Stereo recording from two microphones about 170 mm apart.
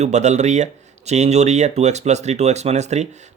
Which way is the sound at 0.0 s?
40° right (ahead or behind).